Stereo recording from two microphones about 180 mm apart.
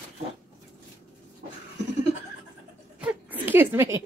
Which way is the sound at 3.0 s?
10° right (ahead or behind).